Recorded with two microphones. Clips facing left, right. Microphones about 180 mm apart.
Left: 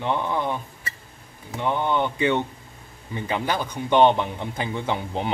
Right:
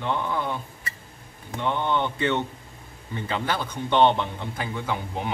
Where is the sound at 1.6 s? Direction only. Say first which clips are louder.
Left 2 dB; 10° left (ahead or behind).